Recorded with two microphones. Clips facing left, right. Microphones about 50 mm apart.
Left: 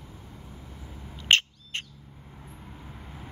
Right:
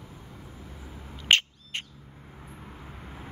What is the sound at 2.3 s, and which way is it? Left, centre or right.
Vehicle, centre.